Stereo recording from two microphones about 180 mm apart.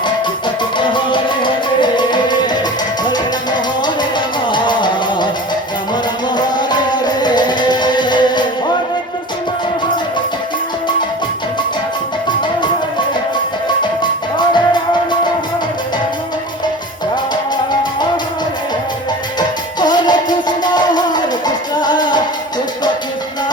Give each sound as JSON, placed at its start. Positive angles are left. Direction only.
{"t": 0.8, "sound": "music", "side_deg": 25}
{"t": 6.3, "sound": "music", "side_deg": 25}
{"t": 14.0, "sound": "music", "side_deg": 25}
{"t": 19.4, "sound": "music", "side_deg": 25}